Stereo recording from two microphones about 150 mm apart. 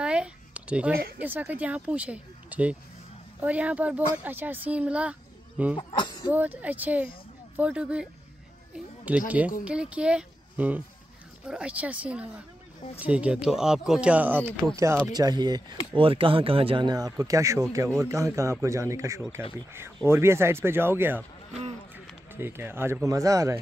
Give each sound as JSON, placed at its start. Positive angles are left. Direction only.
{"t": 0.0, "sound": "a sound", "side_deg": -5}
{"t": 1.2, "sound": "speech", "side_deg": -10}
{"t": 5.8, "sound": "speech", "side_deg": 35}
{"t": 6.2, "sound": "speech", "side_deg": -10}
{"t": 8.7, "sound": "a sound", "side_deg": -10}
{"t": 9.7, "sound": "a child's voice", "side_deg": -10}
{"t": 15.1, "sound": "speech", "side_deg": -25}
{"t": 22.3, "sound": "speech", "side_deg": -15}